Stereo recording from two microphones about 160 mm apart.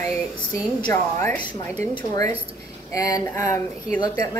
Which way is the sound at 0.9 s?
15° left (ahead or behind).